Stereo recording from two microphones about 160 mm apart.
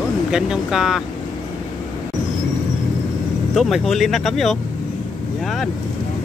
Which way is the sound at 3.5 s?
Centre (ahead or behind).